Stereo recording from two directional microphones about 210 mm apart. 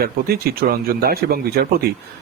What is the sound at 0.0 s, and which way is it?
A man's voice, 45° right (ahead or behind).